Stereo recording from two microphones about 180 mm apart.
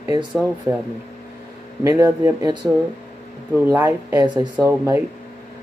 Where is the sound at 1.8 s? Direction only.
15° right (ahead or behind).